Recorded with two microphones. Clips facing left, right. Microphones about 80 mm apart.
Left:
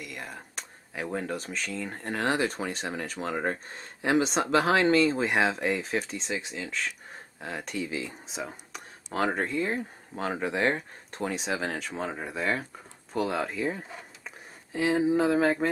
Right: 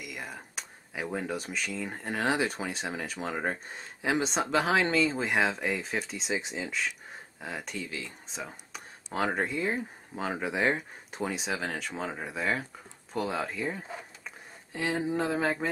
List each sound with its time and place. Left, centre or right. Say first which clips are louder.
0.0 s speech: even; centre
6.3 s speech: right 2 dB; centre
6.7 s speech: even; centre